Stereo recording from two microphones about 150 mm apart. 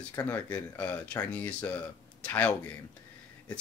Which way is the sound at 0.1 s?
20° left (ahead or behind).